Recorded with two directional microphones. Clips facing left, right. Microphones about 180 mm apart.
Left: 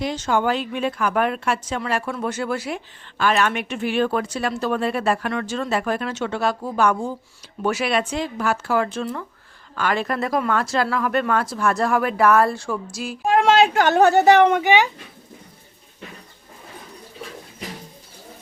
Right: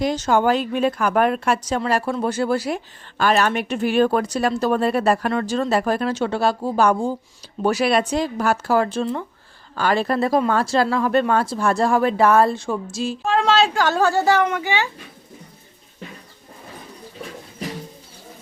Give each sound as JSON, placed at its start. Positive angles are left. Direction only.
{"t": 0.0, "sound": "speech", "side_deg": -40}
{"t": 13.2, "sound": "a woman's voice", "side_deg": 15}